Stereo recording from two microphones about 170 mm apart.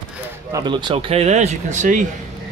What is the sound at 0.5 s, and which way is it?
Speech, 25° right (ahead or behind).